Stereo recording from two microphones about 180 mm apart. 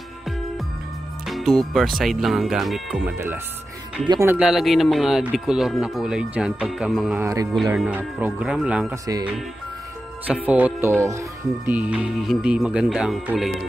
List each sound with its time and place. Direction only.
1.2 s speech: centre (ahead or behind)
4.1 s speech: 15° right (ahead or behind)
4.4 s speech: centre (ahead or behind)
7.2 s speech: 15° right (ahead or behind)
10.2 s speech: 10° right (ahead or behind)